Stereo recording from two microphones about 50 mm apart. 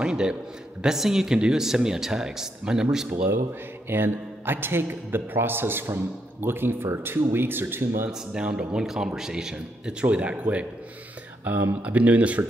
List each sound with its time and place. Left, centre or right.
0.0 s a man's voice: centre
3.9 s a man's voice: right
8.1 s speech: centre
8.8 s speech: centre
10.1 s speech: right